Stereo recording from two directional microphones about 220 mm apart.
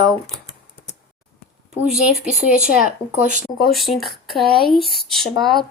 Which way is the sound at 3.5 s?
Centre (ahead or behind).